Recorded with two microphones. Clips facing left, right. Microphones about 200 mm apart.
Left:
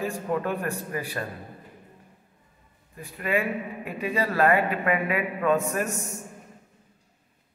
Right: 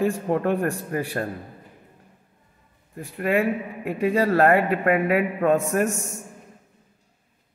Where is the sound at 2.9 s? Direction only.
55° right (ahead or behind).